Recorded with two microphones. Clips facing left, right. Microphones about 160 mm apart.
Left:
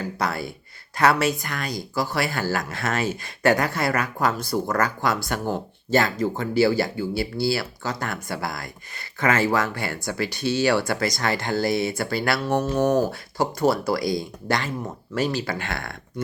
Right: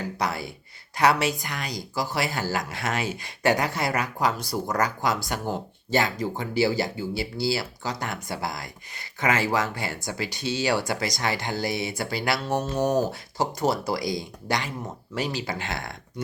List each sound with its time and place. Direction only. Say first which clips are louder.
0.0 s speech: left 2 dB; 15° right (ahead or behind)